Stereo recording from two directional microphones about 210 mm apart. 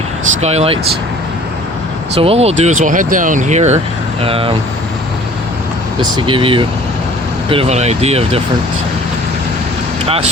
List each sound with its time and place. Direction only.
0.4 s speech: 30° right (ahead or behind)
2.1 s speech: 30° right (ahead or behind)
6.0 s speech: 20° right (ahead or behind)